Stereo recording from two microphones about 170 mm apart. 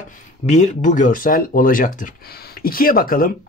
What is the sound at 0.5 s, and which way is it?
Speech, 45° left (ahead or behind).